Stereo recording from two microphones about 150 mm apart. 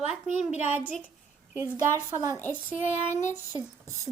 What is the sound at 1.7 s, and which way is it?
Speech, 20° right (ahead or behind).